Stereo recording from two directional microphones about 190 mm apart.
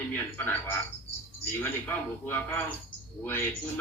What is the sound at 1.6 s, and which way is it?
A man's voice, 10° left (ahead or behind).